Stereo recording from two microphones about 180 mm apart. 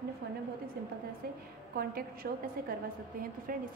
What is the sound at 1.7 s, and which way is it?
A woman's voice, 55° right (ahead or behind).